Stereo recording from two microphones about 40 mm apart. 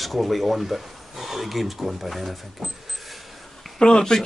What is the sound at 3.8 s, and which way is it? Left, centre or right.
Speech, left.